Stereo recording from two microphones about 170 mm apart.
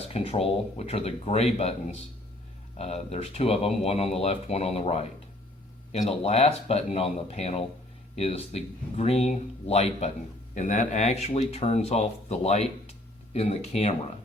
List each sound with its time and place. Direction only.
0.1 s speech: 35° left (ahead or behind)
2.7 s speech: 40° left (ahead or behind)